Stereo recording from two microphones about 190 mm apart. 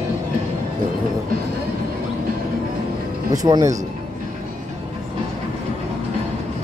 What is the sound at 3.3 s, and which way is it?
Speech, 20° right (ahead or behind).